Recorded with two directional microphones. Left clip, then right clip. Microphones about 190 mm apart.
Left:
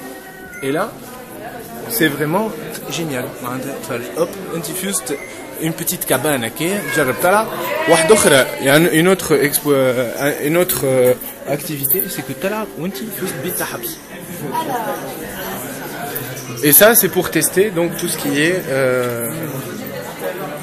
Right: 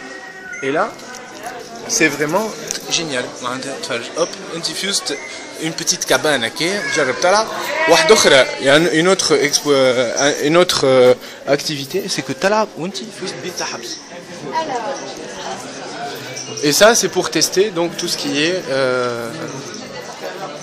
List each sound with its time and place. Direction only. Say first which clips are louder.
2.0 s speech: right 1 dB; 10° right (ahead or behind)
7.0 s speech: even; 5° left (ahead or behind)
9.7 s speech: right 2 dB; 15° right (ahead or behind)
10.5 s speech: right 5 dB; 35° right (ahead or behind)
16.6 s speech: even; 10° right (ahead or behind)